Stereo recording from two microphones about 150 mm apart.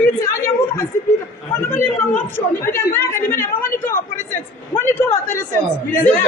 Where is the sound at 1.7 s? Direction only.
15° left (ahead or behind).